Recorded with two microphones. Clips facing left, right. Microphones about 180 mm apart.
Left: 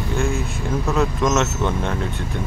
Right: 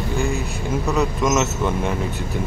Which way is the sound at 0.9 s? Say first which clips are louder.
Even; 5° right (ahead or behind).